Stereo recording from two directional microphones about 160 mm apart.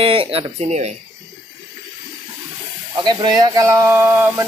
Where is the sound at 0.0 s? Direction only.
35° right (ahead or behind).